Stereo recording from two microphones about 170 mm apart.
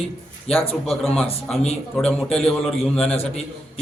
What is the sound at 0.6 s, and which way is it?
Speech, centre (ahead or behind).